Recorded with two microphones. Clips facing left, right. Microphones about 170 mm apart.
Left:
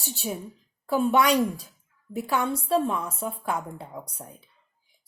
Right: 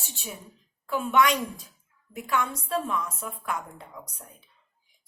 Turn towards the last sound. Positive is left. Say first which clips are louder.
# left 6 dB
turn(degrees=30)  # may be behind; listen again after turning